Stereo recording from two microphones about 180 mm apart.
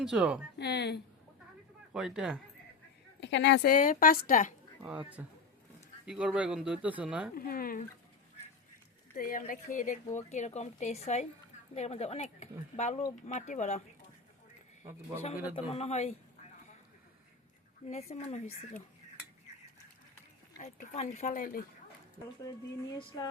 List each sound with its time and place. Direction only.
0.0 s speech: 5° right (ahead or behind)
0.6 s speech: 65° left (ahead or behind)
1.9 s speech: 5° right (ahead or behind)
3.2 s a woman's voice: 80° left
3.6 s a woman's voice: 50° left (ahead or behind)
4.8 s speech: 5° right (ahead or behind)
7.3 s a woman's voice: 55° left (ahead or behind)
9.1 s speech: 50° left (ahead or behind)
15.5 s speech: 35° left (ahead or behind)
17.9 s speech: 35° left (ahead or behind)
20.6 s speech: 40° left (ahead or behind)
22.4 s speech: 20° left (ahead or behind)